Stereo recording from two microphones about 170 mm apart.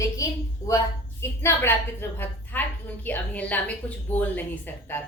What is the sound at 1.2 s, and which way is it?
A woman's voice, 15° left (ahead or behind).